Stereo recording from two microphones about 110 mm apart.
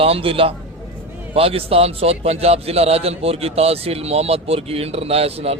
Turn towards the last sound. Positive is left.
turn(degrees=-65)  # may be behind; listen again after turning